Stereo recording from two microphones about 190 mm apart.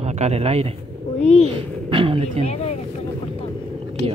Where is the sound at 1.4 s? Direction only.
25° right (ahead or behind).